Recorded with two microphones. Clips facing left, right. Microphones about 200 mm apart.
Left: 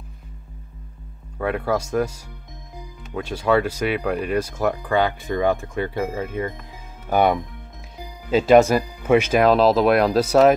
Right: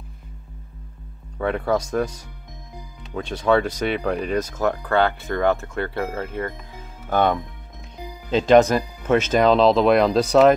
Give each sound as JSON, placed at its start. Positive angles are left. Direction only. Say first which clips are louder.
{"t": 1.4, "sound": "speech", "louder": "right 1 dB", "side_deg": 5}